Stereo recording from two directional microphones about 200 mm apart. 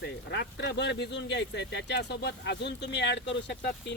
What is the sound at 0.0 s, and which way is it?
Speech, 60° left (ahead or behind).